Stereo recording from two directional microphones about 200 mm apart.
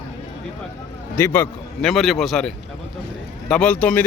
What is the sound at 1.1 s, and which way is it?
A man's voice, 10° left (ahead or behind).